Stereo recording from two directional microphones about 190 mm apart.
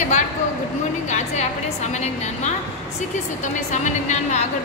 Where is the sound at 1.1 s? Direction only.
40° left (ahead or behind).